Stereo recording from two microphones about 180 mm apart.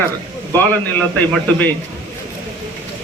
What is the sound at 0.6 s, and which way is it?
Speech, 10° left (ahead or behind).